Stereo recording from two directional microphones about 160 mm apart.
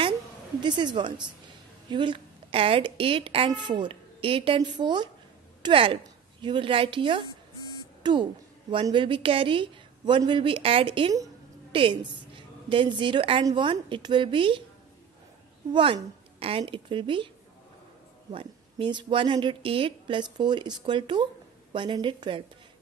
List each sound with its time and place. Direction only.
0.6 s a woman's voice: 30° right (ahead or behind)
15.7 s a woman's voice: 35° right (ahead or behind)
18.3 s a woman's voice: 30° right (ahead or behind)